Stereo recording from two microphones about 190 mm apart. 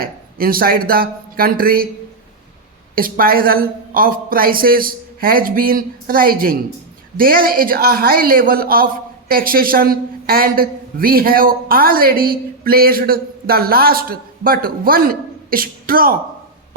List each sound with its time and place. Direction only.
0.0 s a man's voice: 50° right (ahead or behind)
2.9 s a man's voice: 50° right (ahead or behind)